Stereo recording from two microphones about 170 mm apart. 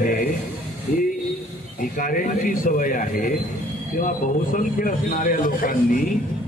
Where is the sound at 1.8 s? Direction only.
55° left (ahead or behind).